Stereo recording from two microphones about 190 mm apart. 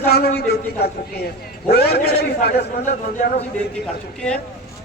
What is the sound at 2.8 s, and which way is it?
Speech, 40° left (ahead or behind).